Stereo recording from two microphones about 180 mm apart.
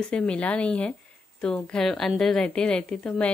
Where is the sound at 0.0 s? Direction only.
5° left (ahead or behind).